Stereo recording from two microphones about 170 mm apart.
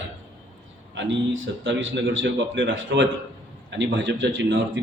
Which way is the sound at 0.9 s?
90° right.